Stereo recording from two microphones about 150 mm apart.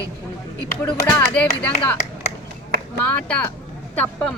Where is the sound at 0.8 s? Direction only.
15° left (ahead or behind).